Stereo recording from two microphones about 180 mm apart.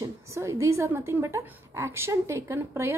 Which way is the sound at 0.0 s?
15° right (ahead or behind).